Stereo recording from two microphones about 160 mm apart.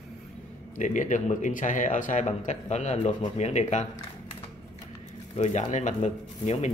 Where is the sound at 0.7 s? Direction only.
50° left (ahead or behind).